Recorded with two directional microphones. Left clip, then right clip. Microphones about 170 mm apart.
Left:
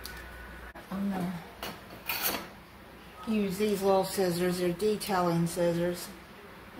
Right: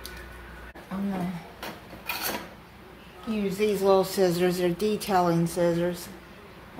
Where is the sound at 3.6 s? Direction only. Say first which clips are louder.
Right 5 dB; 40° right (ahead or behind).